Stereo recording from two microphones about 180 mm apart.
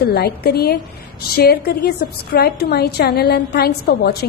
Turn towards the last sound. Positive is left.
turn(degrees=65)  # may be behind; listen again after turning